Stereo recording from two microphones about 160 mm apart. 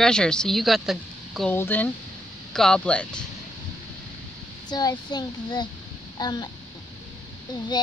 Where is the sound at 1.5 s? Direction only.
10° left (ahead or behind).